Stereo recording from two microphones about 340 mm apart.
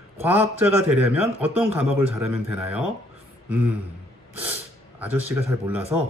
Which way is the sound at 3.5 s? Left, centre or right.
Right.